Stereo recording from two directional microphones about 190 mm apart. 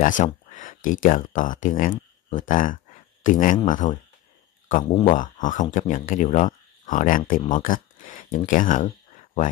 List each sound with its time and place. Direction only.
0.0 s speech: 40° left (ahead or behind)
4.9 s speech: 35° left (ahead or behind)